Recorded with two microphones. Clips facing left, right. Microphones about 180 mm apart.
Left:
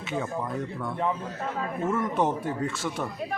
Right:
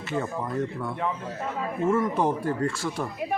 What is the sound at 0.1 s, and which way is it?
Speech, centre (ahead or behind).